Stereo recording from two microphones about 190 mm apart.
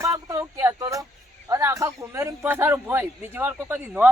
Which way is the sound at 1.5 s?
15° right (ahead or behind).